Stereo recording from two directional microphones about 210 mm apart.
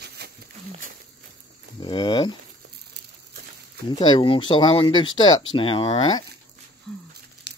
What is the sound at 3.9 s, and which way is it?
Speech, 20° left (ahead or behind).